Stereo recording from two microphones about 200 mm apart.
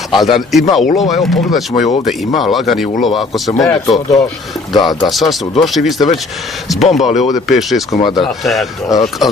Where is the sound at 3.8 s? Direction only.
25° left (ahead or behind).